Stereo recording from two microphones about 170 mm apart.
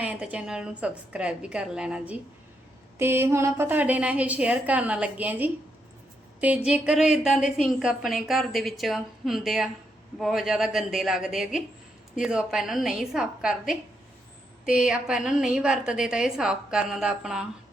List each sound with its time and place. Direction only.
0.0 s a woman's voice: 5° right (ahead or behind)